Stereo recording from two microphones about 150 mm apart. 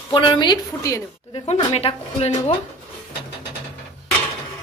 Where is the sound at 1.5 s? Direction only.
40° left (ahead or behind).